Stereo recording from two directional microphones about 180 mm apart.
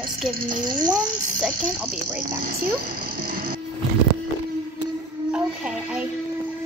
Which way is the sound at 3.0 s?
50° right (ahead or behind).